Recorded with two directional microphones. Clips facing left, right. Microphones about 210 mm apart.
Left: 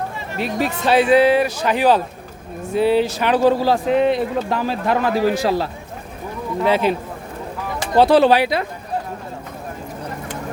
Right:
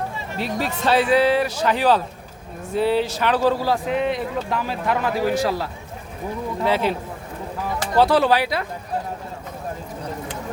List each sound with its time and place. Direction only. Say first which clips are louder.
0.3 s a man's voice: left 4 dB; 15° left (ahead or behind)
6.7 s speech: left 4 dB; 15° left (ahead or behind)